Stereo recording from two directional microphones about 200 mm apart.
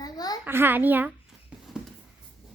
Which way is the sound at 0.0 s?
20° left (ahead or behind).